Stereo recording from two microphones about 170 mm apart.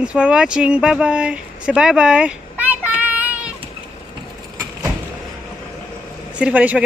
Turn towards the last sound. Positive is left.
turn(degrees=-5)  # may be behind; listen again after turning